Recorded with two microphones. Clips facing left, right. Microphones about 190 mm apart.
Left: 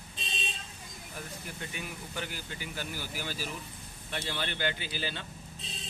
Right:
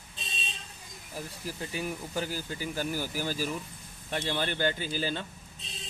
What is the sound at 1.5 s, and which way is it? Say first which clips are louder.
Speech: right 9 dB; 35° right (ahead or behind).